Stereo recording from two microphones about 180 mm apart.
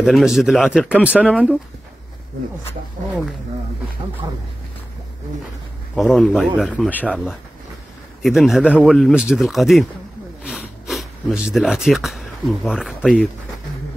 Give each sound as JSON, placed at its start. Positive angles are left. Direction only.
{"t": 0.0, "sound": "speech", "side_deg": -5}
{"t": 4.2, "sound": "speech", "side_deg": -30}
{"t": 5.9, "sound": "speech", "side_deg": 0}
{"t": 8.2, "sound": "speech", "side_deg": 0}